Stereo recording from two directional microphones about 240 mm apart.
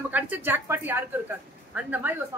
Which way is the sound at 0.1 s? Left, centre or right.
Centre.